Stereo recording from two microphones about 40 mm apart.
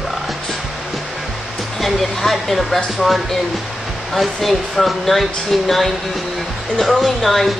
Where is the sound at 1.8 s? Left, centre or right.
Centre.